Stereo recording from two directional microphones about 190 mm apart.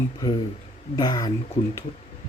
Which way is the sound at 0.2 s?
20° left (ahead or behind).